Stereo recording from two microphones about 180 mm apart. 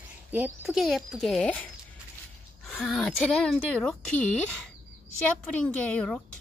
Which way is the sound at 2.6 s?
5° left (ahead or behind).